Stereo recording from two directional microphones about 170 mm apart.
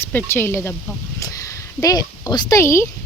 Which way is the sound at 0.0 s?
10° left (ahead or behind).